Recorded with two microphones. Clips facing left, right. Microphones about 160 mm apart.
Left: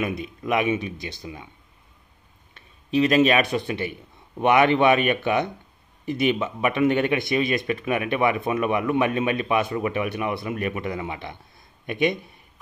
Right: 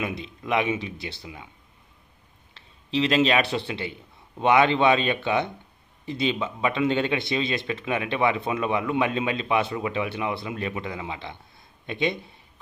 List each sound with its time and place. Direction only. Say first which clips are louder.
0.0 s speech: left 4 dB; 25° right (ahead or behind)
2.5 s a sound: left 4 dB; 25° right (ahead or behind)
4.5 s speech: left 2 dB; 20° right (ahead or behind)